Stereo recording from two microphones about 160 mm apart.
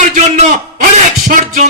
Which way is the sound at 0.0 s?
50° right (ahead or behind).